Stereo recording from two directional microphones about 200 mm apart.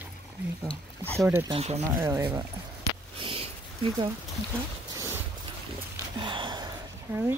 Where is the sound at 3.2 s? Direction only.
25° right (ahead or behind).